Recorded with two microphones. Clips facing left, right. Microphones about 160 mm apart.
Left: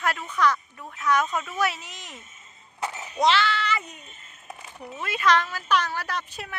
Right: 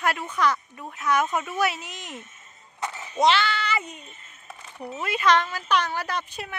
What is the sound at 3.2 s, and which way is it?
A woman's voice, centre (ahead or behind).